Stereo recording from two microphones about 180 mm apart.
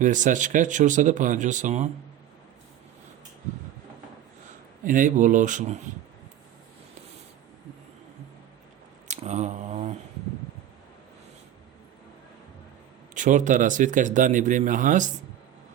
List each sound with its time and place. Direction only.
0.0 s speech: 45° right (ahead or behind)
4.9 s speech: 45° right (ahead or behind)
9.0 s a sound: 40° right (ahead or behind)
13.1 s speech: 45° right (ahead or behind)